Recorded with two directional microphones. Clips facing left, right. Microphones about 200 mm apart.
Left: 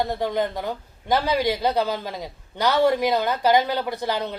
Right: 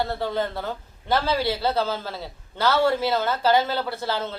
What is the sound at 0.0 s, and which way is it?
Speech, 15° left (ahead or behind).